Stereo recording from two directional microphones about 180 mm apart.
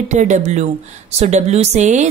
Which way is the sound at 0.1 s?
45° right (ahead or behind).